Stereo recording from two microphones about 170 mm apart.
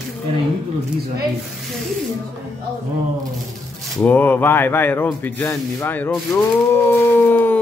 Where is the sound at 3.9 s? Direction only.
10° left (ahead or behind).